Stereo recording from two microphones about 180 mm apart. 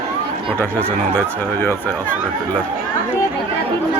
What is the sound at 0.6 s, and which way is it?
Speech, 10° left (ahead or behind).